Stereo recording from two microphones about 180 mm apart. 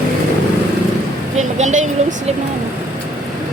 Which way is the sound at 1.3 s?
40° right (ahead or behind).